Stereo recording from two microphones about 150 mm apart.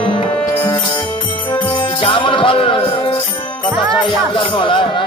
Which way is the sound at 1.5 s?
35° left (ahead or behind).